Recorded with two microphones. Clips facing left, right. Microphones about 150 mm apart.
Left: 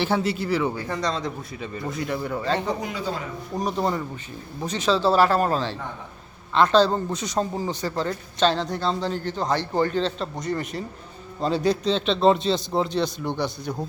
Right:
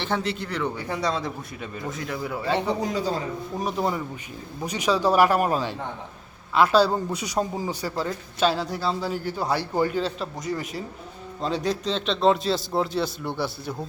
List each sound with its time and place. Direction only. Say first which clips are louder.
0.0 s a man's voice: left 4 dB; 5° left (ahead or behind)
0.9 s a man's voice: even; 10° right (ahead or behind)
2.8 s a man's voice: right 3 dB; 40° right (ahead or behind)
3.5 s a man's voice: left 2 dB; 5° right (ahead or behind)